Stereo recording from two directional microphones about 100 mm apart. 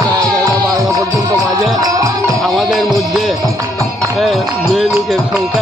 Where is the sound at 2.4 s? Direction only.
Centre (ahead or behind).